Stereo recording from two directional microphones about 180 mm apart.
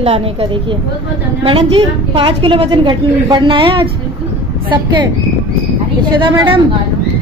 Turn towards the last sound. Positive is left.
turn(degrees=-30)  # may be behind; listen again after turning